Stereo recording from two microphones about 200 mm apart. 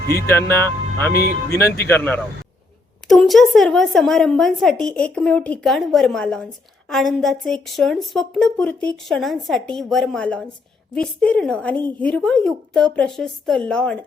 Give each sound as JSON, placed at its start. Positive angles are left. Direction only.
{"t": 0.3, "sound": "speech", "side_deg": 10}
{"t": 1.6, "sound": "speech", "side_deg": 50}
{"t": 1.9, "sound": "speech", "side_deg": 10}